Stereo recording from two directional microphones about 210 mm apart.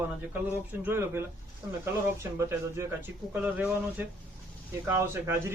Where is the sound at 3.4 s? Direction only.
10° right (ahead or behind).